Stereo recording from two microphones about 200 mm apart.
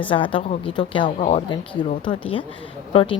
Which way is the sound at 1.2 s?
35° left (ahead or behind).